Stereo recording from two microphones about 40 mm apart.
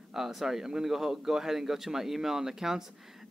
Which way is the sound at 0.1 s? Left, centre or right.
Centre.